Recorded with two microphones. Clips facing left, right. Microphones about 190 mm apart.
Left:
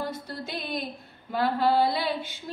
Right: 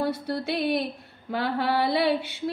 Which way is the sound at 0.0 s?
70° right (ahead or behind).